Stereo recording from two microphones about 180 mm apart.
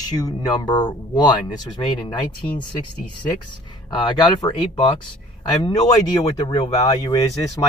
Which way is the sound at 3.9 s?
25° left (ahead or behind).